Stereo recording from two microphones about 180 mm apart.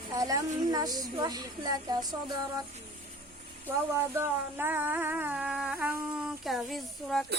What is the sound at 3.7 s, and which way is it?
Music, 15° right (ahead or behind).